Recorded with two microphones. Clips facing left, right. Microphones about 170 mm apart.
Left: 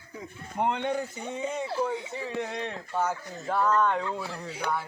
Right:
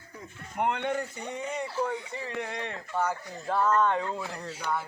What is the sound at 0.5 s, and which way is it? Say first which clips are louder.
Speech: left 1 dB; 25° left (ahead or behind).